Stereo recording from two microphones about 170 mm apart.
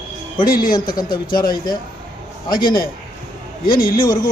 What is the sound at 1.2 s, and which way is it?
Speech, 60° left (ahead or behind).